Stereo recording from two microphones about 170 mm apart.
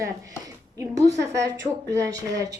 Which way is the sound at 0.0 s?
20° right (ahead or behind).